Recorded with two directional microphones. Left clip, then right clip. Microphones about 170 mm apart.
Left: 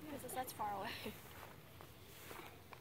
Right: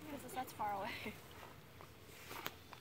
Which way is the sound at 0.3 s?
25° left (ahead or behind).